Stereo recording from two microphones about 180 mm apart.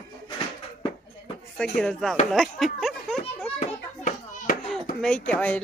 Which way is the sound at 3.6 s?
45° left (ahead or behind).